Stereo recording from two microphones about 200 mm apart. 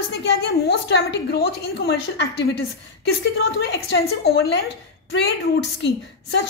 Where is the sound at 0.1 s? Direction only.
55° left (ahead or behind).